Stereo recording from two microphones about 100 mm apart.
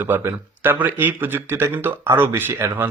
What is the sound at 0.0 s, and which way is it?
Speech, 20° right (ahead or behind).